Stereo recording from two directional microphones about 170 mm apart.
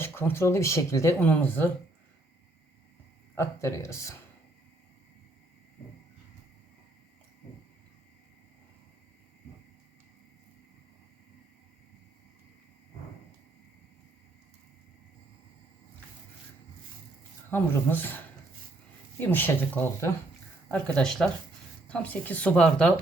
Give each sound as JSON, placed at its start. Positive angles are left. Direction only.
{"t": 0.0, "sound": "speech", "side_deg": 15}
{"t": 3.3, "sound": "speech", "side_deg": 15}
{"t": 17.5, "sound": "speech", "side_deg": 10}
{"t": 19.3, "sound": "speech", "side_deg": 10}